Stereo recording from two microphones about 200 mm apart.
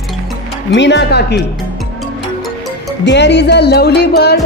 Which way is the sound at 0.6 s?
60° left (ahead or behind).